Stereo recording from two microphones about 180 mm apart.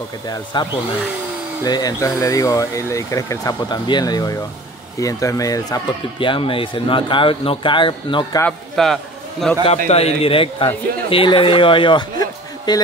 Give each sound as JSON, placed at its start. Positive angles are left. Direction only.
{"t": 0.3, "sound": "speech", "side_deg": 25}
{"t": 8.4, "sound": "a man's voice", "side_deg": 5}
{"t": 9.8, "sound": "a man's voice", "side_deg": 35}